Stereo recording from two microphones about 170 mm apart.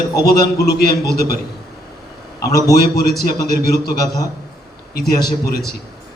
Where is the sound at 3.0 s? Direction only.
65° left (ahead or behind).